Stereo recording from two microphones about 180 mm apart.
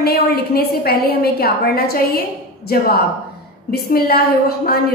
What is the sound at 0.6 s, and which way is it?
A woman's voice, 60° left (ahead or behind).